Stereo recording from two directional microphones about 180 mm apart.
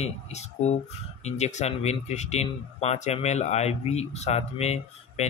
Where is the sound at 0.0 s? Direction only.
40° left (ahead or behind).